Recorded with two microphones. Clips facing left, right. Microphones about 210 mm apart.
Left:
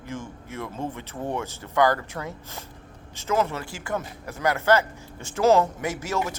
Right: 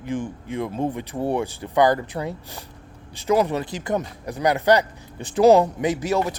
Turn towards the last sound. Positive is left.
turn(degrees=-15)  # may be behind; listen again after turning